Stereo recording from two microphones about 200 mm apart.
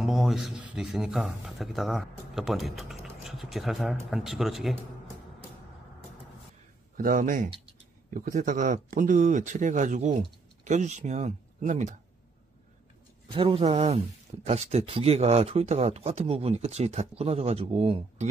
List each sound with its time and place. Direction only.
0.0 s speech: centre (ahead or behind)
7.0 s speech: 45° right (ahead or behind)
13.3 s speech: 25° right (ahead or behind)